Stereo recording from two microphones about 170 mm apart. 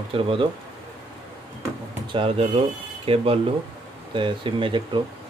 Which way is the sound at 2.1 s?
35° right (ahead or behind).